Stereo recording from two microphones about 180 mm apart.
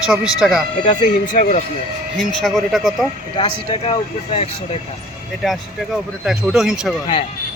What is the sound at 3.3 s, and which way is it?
Speech, 30° left (ahead or behind).